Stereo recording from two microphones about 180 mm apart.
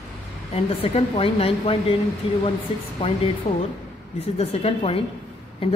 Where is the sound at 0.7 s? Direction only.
30° left (ahead or behind).